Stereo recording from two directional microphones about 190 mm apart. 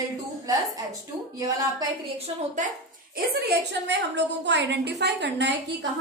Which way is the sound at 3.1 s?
55° right (ahead or behind).